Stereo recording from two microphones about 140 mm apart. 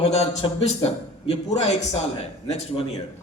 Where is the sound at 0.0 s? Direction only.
45° left (ahead or behind).